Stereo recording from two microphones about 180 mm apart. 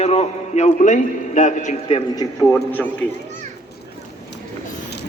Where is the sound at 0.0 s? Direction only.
35° left (ahead or behind).